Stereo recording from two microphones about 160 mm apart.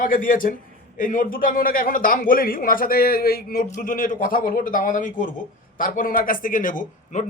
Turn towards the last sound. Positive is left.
turn(degrees=50)  # may be behind; listen again after turning